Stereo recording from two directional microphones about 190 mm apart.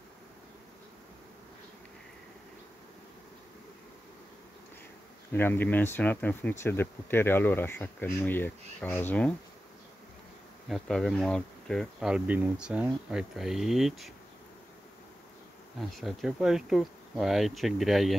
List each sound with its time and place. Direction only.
5.3 s speech: 10° left (ahead or behind)
10.7 s speech: centre (ahead or behind)
15.8 s speech: centre (ahead or behind)